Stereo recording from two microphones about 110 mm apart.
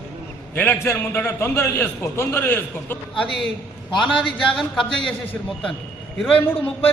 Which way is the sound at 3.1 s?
5° left (ahead or behind).